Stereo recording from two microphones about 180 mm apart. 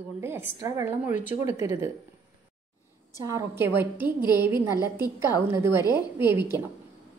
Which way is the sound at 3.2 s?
15° right (ahead or behind).